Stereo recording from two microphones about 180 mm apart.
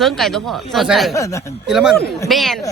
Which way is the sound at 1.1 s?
15° left (ahead or behind).